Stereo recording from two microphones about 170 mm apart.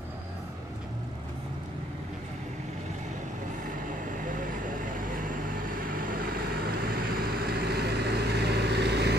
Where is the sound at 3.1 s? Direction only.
50° right (ahead or behind).